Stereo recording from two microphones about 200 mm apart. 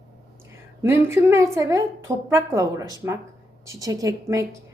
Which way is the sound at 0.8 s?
15° right (ahead or behind).